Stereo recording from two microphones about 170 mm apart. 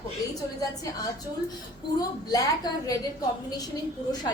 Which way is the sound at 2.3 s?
20° left (ahead or behind).